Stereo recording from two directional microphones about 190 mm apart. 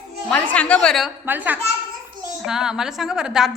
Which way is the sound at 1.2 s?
10° right (ahead or behind).